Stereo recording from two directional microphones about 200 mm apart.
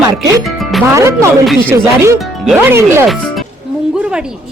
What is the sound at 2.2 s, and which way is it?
A woman's voice, 5° right (ahead or behind).